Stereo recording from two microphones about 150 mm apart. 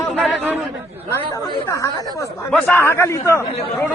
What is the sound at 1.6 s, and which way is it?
Speech, 20° left (ahead or behind).